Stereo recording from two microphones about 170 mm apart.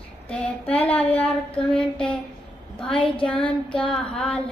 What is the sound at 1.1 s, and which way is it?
A woman's voice, 5° left (ahead or behind).